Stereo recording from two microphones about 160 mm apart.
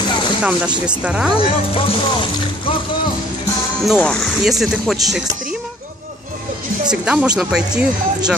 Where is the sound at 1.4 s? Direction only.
35° left (ahead or behind).